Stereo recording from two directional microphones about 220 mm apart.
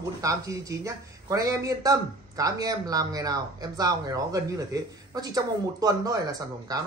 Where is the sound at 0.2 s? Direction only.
15° right (ahead or behind).